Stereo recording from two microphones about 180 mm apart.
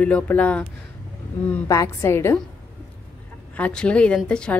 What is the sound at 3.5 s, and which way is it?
A woman's voice, 5° left (ahead or behind).